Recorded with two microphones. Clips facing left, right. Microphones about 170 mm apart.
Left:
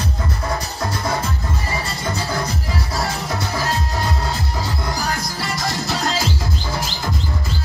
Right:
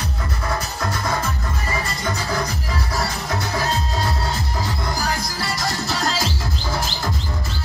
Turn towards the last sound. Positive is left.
turn(degrees=20)  # may be behind; listen again after turning